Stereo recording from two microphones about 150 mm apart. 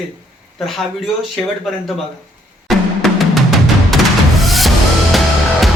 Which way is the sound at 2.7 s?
Centre (ahead or behind).